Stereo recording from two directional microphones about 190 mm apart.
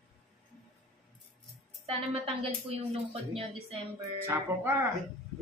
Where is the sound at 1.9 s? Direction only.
30° right (ahead or behind).